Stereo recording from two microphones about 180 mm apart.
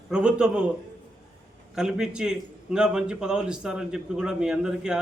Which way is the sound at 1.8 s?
5° right (ahead or behind).